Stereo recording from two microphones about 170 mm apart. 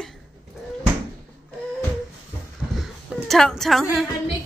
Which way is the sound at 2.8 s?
Centre (ahead or behind).